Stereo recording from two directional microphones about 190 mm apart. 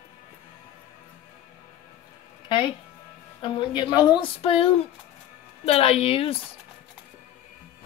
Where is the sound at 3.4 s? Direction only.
25° left (ahead or behind).